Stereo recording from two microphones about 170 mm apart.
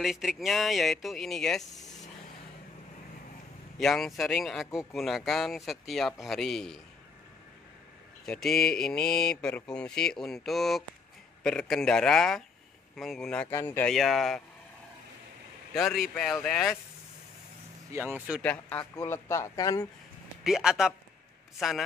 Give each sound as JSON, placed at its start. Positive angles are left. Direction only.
{"t": 0.0, "sound": "mantra", "side_deg": 0}
{"t": 1.8, "sound": "vehicle", "side_deg": 20}
{"t": 3.7, "sound": "mantra", "side_deg": 0}
{"t": 8.3, "sound": "mantra", "side_deg": 0}
{"t": 13.9, "sound": "mantra", "side_deg": 0}
{"t": 15.7, "sound": "mantra", "side_deg": 0}
{"t": 17.9, "sound": "speech", "side_deg": -10}
{"t": 18.4, "sound": "a man's voice", "side_deg": 10}
{"t": 20.4, "sound": "mantra", "side_deg": -5}